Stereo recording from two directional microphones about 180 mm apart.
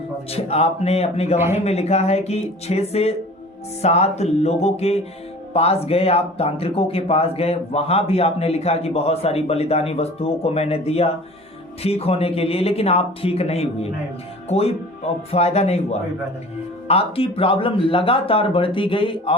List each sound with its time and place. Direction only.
0.3 s speech: 35° left (ahead or behind)